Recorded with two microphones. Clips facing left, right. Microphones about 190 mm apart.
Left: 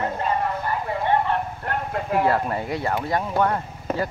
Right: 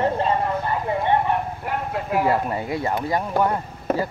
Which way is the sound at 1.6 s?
5° right (ahead or behind).